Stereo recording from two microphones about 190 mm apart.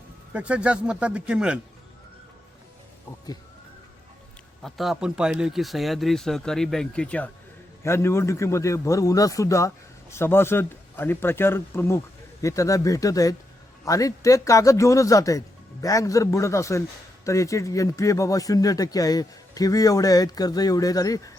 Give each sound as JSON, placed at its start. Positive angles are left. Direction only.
{"t": 0.3, "sound": "speech", "side_deg": -5}
{"t": 4.6, "sound": "a man's voice", "side_deg": 0}